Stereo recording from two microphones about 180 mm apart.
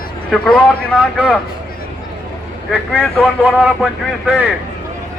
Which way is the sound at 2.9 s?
5° left (ahead or behind).